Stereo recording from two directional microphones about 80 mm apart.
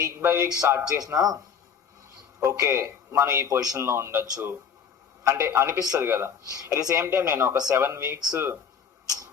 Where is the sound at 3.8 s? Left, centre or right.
Right.